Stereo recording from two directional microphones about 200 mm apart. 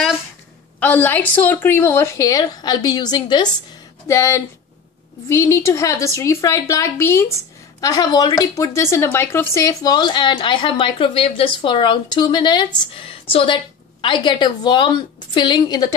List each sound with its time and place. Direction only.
0.7 s a woman's voice: 10° left (ahead or behind)